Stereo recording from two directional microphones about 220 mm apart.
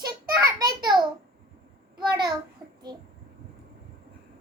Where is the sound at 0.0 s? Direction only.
20° right (ahead or behind).